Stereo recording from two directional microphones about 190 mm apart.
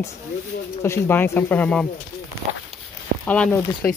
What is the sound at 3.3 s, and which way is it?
Speech, 10° left (ahead or behind).